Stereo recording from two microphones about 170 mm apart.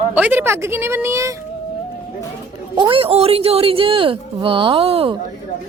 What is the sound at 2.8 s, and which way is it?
Speech, 30° right (ahead or behind).